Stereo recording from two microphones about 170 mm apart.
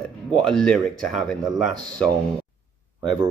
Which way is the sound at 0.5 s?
5° left (ahead or behind).